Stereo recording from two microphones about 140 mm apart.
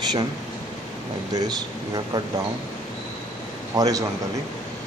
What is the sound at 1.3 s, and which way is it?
Speech, 30° right (ahead or behind).